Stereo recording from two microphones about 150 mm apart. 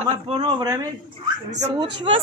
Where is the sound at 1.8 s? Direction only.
35° right (ahead or behind).